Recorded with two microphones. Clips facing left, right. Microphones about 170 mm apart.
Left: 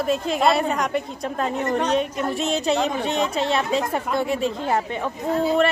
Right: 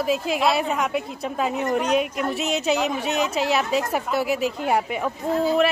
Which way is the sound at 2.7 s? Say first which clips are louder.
Even; 35° left (ahead or behind).